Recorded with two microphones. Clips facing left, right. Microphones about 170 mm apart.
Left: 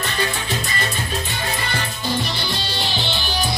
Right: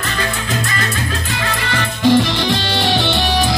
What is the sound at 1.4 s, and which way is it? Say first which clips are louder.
Music: right 4 dB; 85° right.